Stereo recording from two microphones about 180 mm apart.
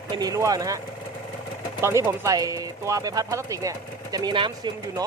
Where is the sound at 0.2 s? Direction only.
20° right (ahead or behind).